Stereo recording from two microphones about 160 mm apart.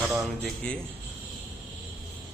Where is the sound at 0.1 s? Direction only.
5° left (ahead or behind).